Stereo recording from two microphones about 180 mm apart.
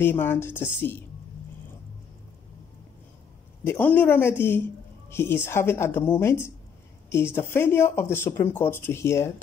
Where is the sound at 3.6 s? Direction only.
10° left (ahead or behind).